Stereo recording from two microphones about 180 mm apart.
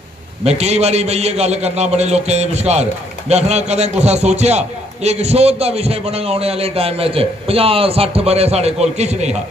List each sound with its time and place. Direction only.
0.4 s a man's voice: 35° right (ahead or behind)